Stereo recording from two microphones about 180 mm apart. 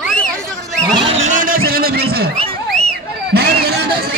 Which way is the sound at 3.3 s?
60° right (ahead or behind).